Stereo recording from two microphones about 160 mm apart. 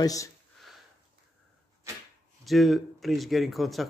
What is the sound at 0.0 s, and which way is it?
Speech, 20° left (ahead or behind).